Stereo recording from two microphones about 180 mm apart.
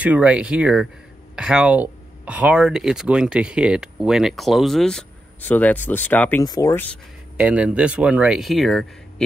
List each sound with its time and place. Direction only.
0.0 s speech: 5° right (ahead or behind); by 6.4 s 10° left (ahead or behind)
6.4 s speech: 20° left (ahead or behind)
7.3 s speech: 5° right (ahead or behind)